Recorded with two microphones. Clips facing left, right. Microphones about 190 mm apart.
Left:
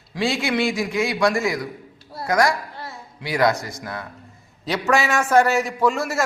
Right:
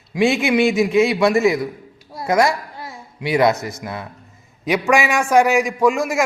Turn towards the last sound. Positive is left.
turn(degrees=-15)  # may be behind; listen again after turning